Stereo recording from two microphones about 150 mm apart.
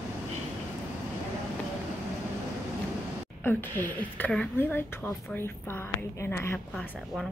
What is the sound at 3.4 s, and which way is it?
A woman's voice, 15° left (ahead or behind).